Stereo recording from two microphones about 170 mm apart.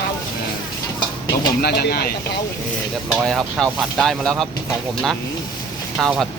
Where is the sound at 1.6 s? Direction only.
70° left (ahead or behind).